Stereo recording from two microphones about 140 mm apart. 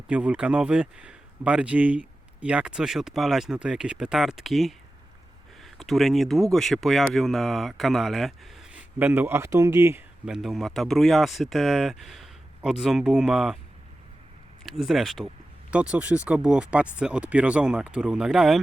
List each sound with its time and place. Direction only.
0.1 s speech: 10° right (ahead or behind)
9.0 s speech: 15° right (ahead or behind)
10.2 s speech: 5° right (ahead or behind)
14.6 s speech: centre (ahead or behind)